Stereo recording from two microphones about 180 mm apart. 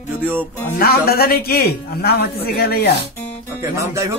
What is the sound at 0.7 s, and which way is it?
A man's voice, 60° left (ahead or behind).